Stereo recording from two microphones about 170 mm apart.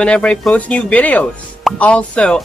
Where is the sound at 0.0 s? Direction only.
5° left (ahead or behind).